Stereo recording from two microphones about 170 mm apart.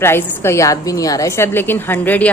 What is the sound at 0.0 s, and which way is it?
Speech, 15° left (ahead or behind).